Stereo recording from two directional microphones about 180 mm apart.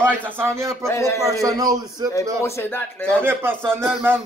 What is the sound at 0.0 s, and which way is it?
Speech, 15° right (ahead or behind).